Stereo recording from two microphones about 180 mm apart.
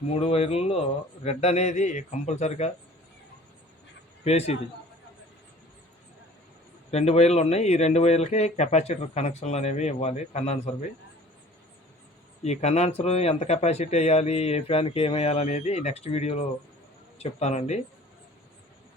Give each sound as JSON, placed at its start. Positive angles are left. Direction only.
{"t": 0.1, "sound": "speech", "side_deg": 35}
{"t": 4.2, "sound": "a man's voice", "side_deg": 35}
{"t": 6.9, "sound": "speech", "side_deg": 35}
{"t": 12.4, "sound": "speech", "side_deg": 40}